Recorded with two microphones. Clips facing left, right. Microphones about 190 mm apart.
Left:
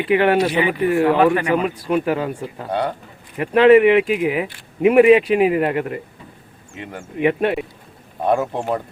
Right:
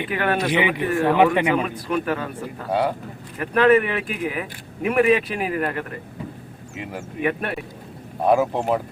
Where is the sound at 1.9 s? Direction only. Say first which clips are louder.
Left 4 dB; 15° left (ahead or behind).